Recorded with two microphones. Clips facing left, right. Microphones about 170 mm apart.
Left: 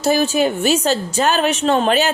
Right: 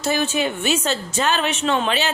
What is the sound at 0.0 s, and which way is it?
A woman's voice, 40° left (ahead or behind).